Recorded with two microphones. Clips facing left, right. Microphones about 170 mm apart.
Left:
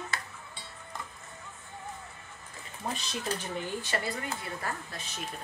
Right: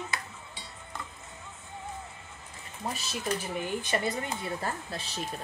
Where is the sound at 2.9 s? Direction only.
5° right (ahead or behind); by 5.2 s 30° right (ahead or behind).